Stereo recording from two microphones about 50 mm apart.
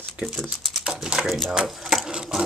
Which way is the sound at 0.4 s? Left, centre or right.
Centre.